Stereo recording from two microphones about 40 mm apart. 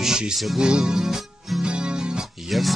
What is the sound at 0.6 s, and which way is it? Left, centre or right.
Speech, centre.